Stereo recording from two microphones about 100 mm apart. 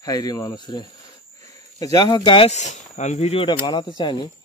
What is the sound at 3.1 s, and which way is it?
Speech, 90° left.